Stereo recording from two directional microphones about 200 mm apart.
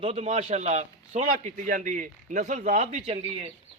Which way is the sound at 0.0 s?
30° right (ahead or behind).